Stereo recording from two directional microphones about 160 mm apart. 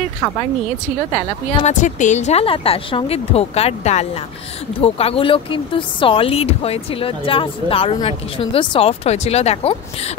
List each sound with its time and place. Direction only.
1.6 s speech: 50° left (ahead or behind)